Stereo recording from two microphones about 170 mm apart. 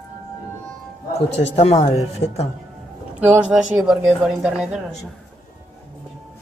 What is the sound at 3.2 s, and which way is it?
Speech, 5° right (ahead or behind).